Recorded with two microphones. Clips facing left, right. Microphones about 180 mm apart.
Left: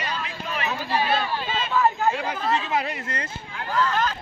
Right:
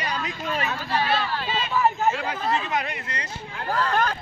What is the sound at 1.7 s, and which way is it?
Speech, 15° right (ahead or behind).